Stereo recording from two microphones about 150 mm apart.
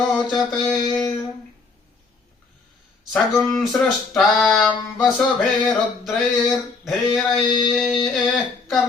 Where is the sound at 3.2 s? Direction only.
Centre (ahead or behind).